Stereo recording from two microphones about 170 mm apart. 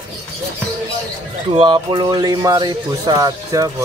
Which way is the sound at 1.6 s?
30° right (ahead or behind).